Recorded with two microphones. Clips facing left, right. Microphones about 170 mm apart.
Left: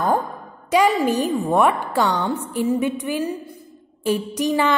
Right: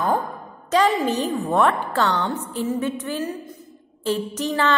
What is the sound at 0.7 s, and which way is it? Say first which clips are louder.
A woman's voice: left 2 dB; 10° left (ahead or behind).